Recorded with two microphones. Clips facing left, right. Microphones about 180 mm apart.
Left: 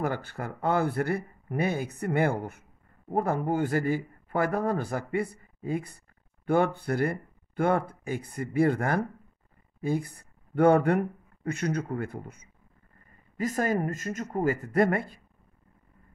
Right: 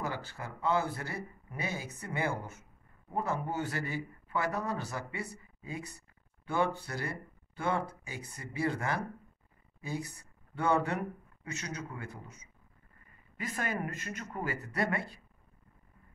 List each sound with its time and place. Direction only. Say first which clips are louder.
0.0 s speech: left 7 dB; 55° left (ahead or behind)
13.4 s speech: left 9 dB; 40° left (ahead or behind)